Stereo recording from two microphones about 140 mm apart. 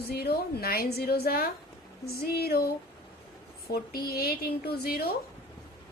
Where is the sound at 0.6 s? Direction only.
90° left.